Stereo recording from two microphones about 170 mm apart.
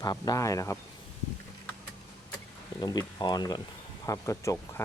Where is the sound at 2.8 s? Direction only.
20° left (ahead or behind).